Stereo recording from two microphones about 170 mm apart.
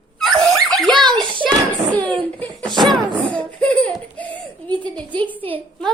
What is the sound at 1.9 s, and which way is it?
A woman's voice, 10° left (ahead or behind).